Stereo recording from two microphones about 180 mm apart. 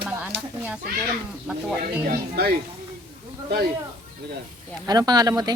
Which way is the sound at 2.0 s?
60° right (ahead or behind).